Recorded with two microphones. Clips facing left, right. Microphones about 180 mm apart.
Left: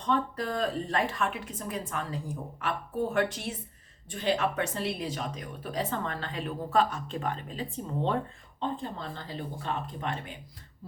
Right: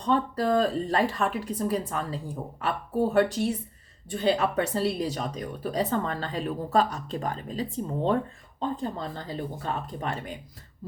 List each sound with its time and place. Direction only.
0.0 s speech: 35° right (ahead or behind)